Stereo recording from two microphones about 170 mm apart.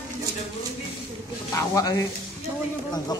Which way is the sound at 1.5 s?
20° left (ahead or behind).